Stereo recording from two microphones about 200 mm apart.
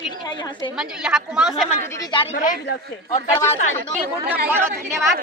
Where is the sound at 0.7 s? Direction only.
5° right (ahead or behind).